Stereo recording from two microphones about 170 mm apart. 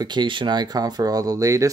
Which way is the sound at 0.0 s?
25° right (ahead or behind).